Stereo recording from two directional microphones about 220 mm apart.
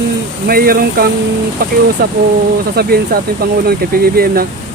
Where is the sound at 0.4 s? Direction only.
40° right (ahead or behind).